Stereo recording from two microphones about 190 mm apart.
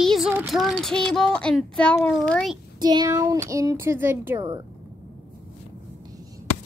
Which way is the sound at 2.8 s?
20° right (ahead or behind).